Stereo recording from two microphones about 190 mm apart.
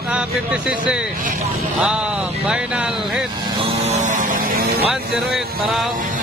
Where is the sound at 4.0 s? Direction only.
40° right (ahead or behind).